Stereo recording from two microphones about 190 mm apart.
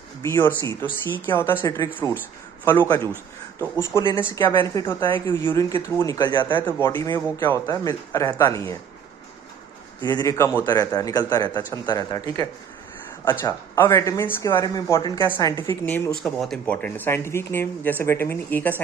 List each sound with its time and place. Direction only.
0.2 s speech: 10° left (ahead or behind)
6.6 s speech: 10° left (ahead or behind)
10.0 s speech: 20° left (ahead or behind)
15.6 s speech: 10° left (ahead or behind)